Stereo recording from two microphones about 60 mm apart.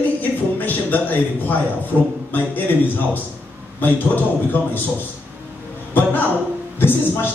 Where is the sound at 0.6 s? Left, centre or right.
Left.